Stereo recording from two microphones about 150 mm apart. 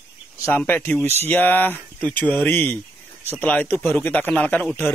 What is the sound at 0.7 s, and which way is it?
Speech, 15° left (ahead or behind).